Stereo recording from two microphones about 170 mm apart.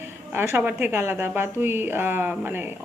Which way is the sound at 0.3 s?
10° right (ahead or behind).